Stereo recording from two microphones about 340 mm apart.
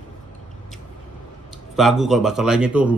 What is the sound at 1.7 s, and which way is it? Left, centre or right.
A man's voice, centre.